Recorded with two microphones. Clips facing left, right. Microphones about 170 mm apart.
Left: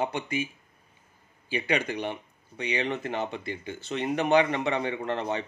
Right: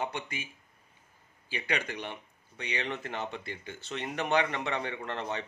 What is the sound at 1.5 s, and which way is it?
Speech, 15° left (ahead or behind).